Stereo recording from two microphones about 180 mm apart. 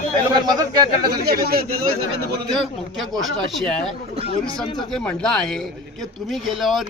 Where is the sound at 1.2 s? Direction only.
60° right (ahead or behind).